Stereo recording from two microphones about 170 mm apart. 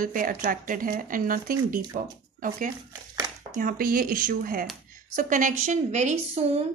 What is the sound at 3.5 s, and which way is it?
A woman's voice, 50° right (ahead or behind).